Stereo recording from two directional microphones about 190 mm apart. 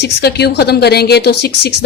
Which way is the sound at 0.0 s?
60° left (ahead or behind).